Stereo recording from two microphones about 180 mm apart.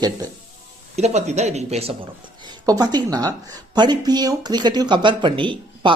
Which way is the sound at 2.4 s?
20° right (ahead or behind).